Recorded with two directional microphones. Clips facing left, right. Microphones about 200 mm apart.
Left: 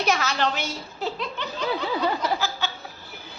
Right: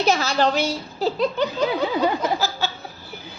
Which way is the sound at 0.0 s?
30° right (ahead or behind).